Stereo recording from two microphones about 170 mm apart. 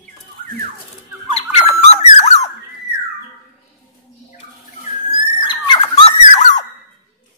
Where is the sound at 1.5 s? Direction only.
40° left (ahead or behind).